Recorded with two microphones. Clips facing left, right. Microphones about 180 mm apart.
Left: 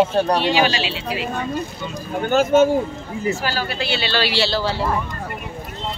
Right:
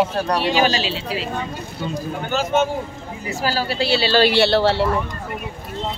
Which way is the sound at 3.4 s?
35° right (ahead or behind).